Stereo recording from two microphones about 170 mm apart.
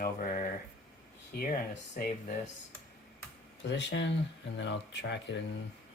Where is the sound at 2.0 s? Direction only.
55° left (ahead or behind).